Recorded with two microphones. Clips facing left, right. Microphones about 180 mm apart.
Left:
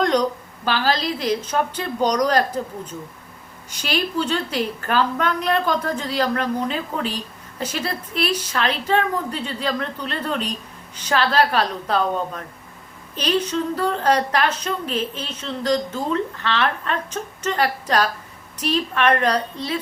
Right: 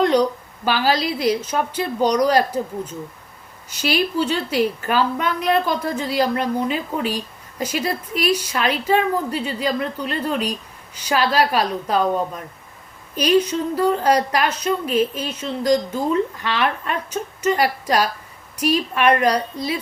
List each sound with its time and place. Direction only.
0.0 s a woman's voice: 10° right (ahead or behind)